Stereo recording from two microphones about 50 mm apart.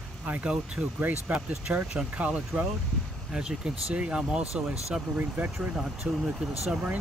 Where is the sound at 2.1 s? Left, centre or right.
Right.